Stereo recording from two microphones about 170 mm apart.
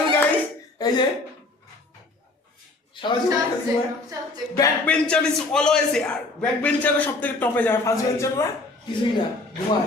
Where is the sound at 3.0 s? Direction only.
30° left (ahead or behind).